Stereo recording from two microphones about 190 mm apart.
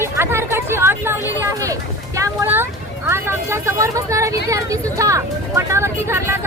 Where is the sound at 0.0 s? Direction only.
15° right (ahead or behind).